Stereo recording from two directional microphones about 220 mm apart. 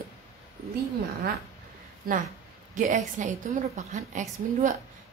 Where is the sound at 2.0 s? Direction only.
40° right (ahead or behind).